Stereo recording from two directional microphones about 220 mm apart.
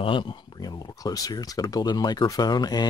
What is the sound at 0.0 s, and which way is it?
Speech, 20° left (ahead or behind).